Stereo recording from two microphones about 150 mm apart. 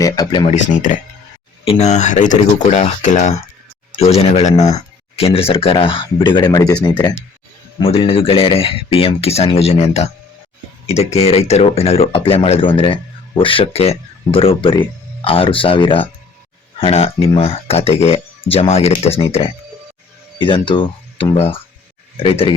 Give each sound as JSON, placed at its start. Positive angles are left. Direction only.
{"t": 0.0, "sound": "speech", "side_deg": 25}
{"t": 0.4, "sound": "speech", "side_deg": 55}
{"t": 1.6, "sound": "speech", "side_deg": 45}
{"t": 7.8, "sound": "speech", "side_deg": 40}